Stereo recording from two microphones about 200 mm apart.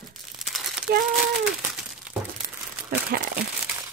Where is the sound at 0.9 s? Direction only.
50° right (ahead or behind).